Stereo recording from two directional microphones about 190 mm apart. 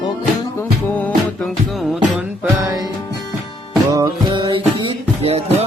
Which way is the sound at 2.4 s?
15° right (ahead or behind).